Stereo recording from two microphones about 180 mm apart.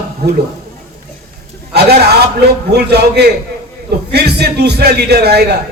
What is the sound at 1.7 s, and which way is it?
A man's voice, 65° right (ahead or behind).